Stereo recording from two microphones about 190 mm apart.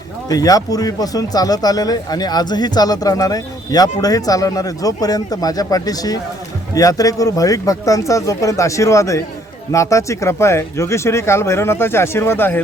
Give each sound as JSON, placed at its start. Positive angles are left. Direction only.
{"t": 0.3, "sound": "speech", "side_deg": 20}